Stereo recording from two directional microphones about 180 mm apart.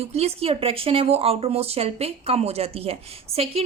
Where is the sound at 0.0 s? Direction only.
35° right (ahead or behind).